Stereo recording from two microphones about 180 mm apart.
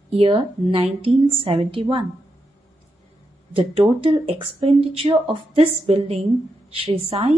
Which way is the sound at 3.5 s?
30° right (ahead or behind).